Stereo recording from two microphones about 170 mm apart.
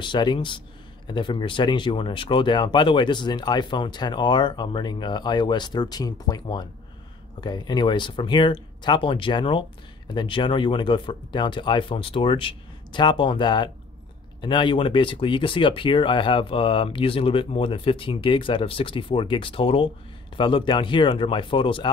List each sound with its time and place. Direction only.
0.0 s speech: 25° left (ahead or behind)